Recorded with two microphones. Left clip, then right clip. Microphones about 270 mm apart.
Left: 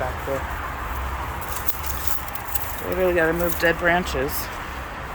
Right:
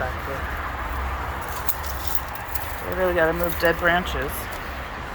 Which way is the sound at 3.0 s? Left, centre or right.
Centre.